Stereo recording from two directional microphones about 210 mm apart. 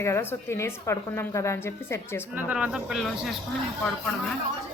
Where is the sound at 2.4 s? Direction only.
5° right (ahead or behind).